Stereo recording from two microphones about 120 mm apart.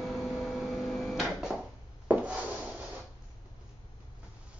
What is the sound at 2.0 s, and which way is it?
Wood, 10° right (ahead or behind).